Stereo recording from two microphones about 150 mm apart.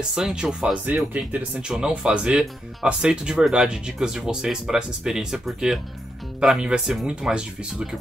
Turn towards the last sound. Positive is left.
turn(degrees=-5)  # may be behind; listen again after turning